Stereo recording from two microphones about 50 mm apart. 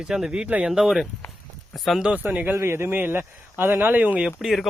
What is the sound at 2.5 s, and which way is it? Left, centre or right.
Speech, right.